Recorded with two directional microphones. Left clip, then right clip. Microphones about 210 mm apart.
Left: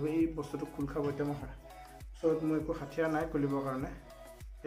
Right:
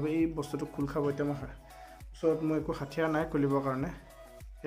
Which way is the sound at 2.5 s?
50° right (ahead or behind).